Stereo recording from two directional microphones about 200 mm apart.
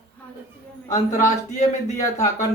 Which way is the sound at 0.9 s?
15° left (ahead or behind).